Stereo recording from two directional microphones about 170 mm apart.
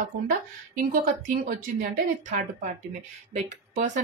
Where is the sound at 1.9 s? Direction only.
45° right (ahead or behind).